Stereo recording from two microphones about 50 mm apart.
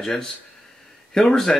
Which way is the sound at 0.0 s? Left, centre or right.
Centre.